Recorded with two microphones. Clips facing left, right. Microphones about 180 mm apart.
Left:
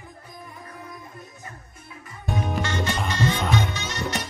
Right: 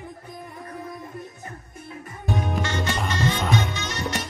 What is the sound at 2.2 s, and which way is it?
Music, centre (ahead or behind).